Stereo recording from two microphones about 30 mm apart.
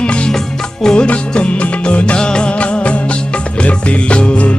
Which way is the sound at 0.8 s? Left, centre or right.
Centre.